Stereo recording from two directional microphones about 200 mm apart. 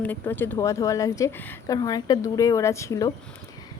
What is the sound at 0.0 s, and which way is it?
A woman's voice, 10° left (ahead or behind).